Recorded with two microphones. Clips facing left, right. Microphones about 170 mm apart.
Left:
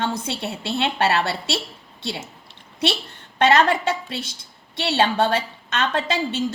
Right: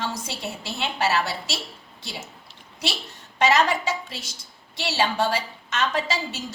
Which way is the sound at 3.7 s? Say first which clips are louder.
Left 4 dB; 60° left (ahead or behind).